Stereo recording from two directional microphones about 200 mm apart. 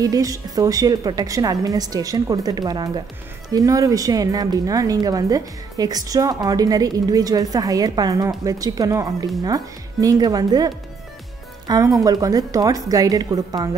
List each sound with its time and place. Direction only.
0.0 s a woman's voice: 20° right (ahead or behind)